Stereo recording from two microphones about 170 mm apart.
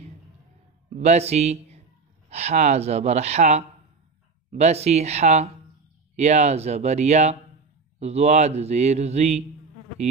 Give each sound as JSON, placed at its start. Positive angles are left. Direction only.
{"t": 0.9, "sound": "speech", "side_deg": -40}